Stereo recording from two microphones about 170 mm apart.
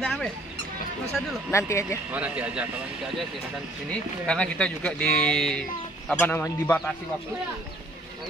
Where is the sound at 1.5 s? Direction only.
15° left (ahead or behind).